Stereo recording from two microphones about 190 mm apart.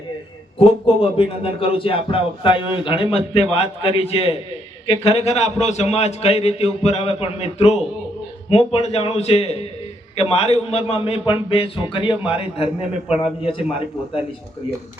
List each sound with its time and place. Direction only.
1.1 s a man's voice: 30° left (ahead or behind)